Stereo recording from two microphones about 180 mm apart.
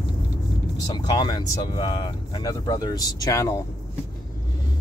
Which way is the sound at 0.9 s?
20° left (ahead or behind).